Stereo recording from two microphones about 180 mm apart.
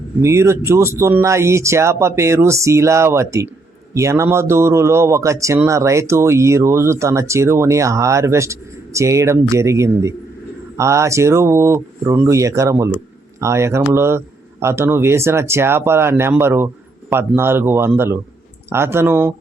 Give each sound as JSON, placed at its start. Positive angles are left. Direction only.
{"t": 0.2, "sound": "a man's voice", "side_deg": -15}